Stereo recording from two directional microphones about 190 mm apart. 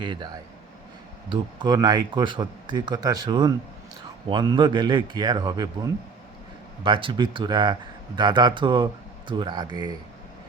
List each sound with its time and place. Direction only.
0.0 s speech: 25° right (ahead or behind)
1.3 s speech: 25° right (ahead or behind)